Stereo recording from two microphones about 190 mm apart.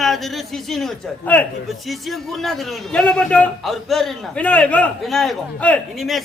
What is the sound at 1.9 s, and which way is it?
A man's voice, centre (ahead or behind).